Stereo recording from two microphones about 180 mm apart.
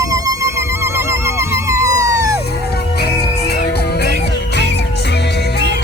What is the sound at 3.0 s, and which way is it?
Music, 60° left (ahead or behind).